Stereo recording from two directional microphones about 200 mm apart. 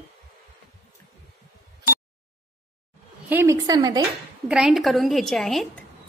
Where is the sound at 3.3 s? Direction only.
10° right (ahead or behind).